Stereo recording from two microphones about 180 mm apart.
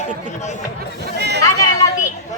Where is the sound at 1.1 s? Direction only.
70° right (ahead or behind).